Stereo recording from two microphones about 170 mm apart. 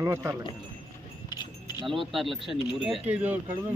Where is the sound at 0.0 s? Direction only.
15° right (ahead or behind).